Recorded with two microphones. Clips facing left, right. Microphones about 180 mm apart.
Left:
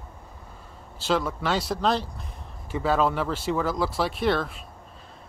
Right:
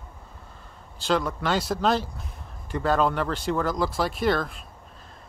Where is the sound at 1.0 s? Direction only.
5° left (ahead or behind).